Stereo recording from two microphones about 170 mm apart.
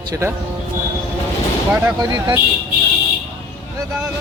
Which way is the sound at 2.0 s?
25° right (ahead or behind).